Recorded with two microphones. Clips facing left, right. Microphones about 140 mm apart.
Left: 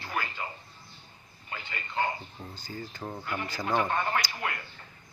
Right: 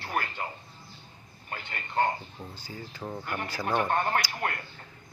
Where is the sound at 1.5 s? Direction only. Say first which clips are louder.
Right 3 dB; 50° right (ahead or behind).